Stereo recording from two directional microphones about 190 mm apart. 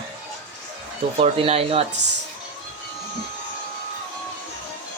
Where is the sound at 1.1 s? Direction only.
30° right (ahead or behind).